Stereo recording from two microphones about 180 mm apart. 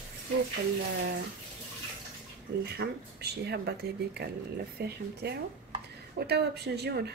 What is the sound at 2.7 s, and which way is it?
A woman's voice, 65° right (ahead or behind).